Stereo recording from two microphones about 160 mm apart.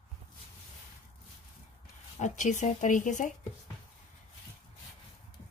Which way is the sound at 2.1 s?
50° left (ahead or behind).